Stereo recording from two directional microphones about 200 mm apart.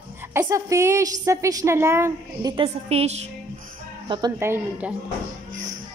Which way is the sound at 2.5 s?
30° right (ahead or behind).